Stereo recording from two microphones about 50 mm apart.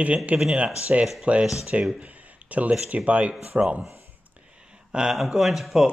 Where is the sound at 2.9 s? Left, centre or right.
Right.